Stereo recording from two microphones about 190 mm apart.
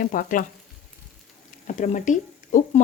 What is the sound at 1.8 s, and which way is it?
Speech, 40° left (ahead or behind).